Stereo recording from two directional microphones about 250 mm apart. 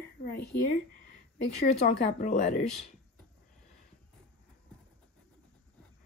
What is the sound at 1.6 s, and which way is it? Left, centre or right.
Speech, left.